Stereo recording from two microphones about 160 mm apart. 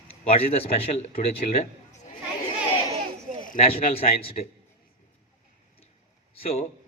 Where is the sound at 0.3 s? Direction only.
40° left (ahead or behind).